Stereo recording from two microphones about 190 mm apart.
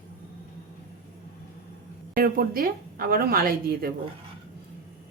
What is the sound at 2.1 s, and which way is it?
A woman's voice, 50° right (ahead or behind).